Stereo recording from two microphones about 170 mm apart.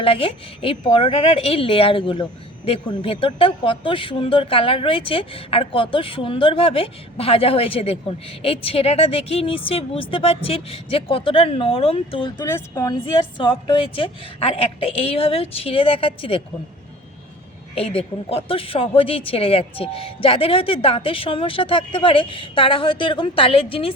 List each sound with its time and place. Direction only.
0.0 s speech: 30° left (ahead or behind)
12.5 s speech: 20° left (ahead or behind)
17.7 s speech: 35° left (ahead or behind)